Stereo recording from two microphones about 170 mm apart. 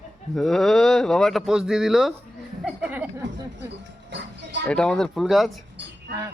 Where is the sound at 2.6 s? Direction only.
5° right (ahead or behind).